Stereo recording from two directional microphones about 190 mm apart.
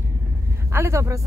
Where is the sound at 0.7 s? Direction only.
15° right (ahead or behind).